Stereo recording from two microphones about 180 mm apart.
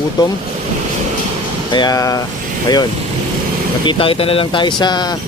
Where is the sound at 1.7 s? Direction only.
25° left (ahead or behind).